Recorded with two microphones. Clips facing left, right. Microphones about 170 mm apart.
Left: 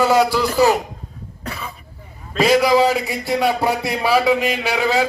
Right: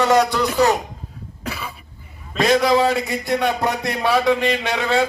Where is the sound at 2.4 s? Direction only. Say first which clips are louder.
Left 2 dB; 5° left (ahead or behind).